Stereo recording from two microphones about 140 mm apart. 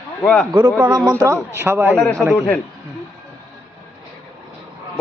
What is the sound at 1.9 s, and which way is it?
Speech, 5° left (ahead or behind).